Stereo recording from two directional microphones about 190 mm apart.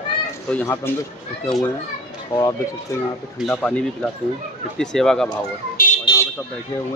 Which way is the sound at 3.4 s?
5° left (ahead or behind).